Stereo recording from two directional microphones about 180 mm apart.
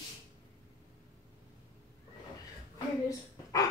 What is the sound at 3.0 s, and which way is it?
Dog, 20° left (ahead or behind).